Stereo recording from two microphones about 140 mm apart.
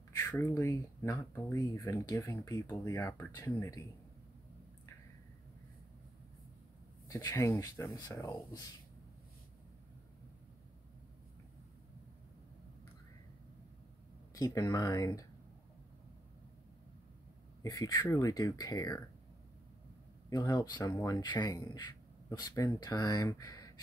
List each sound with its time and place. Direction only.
0.2 s speech: 20° left (ahead or behind)
7.1 s speech: 20° left (ahead or behind)
14.3 s speech: 25° left (ahead or behind)
17.6 s speech: 25° left (ahead or behind)
20.2 s speech: 30° left (ahead or behind)